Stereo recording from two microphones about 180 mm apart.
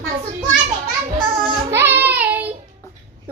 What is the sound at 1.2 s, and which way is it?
Child singing, 25° right (ahead or behind).